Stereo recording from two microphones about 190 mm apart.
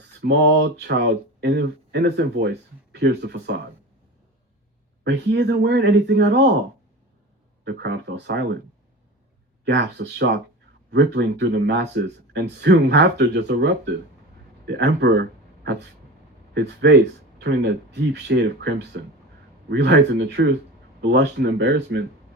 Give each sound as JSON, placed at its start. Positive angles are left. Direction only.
{"t": 0.2, "sound": "speech", "side_deg": -65}
{"t": 5.0, "sound": "speech", "side_deg": -65}
{"t": 7.6, "sound": "speech", "side_deg": -65}
{"t": 9.6, "sound": "speech", "side_deg": -65}
{"t": 17.4, "sound": "speech", "side_deg": -65}